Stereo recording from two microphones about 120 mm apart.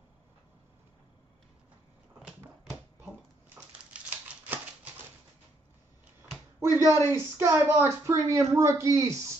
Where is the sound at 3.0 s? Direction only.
15° right (ahead or behind).